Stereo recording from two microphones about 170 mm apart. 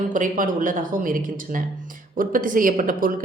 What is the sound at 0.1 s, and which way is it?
A woman's voice, 50° right (ahead or behind).